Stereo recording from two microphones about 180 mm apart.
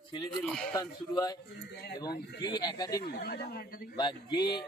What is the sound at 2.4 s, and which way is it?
Speech, 25° left (ahead or behind).